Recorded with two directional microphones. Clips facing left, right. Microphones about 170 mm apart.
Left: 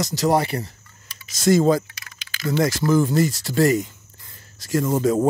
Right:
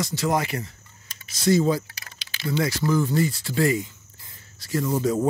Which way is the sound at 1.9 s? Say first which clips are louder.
Even; 35° right (ahead or behind).